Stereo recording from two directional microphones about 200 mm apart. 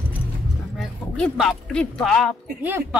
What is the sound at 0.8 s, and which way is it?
Speech, centre (ahead or behind).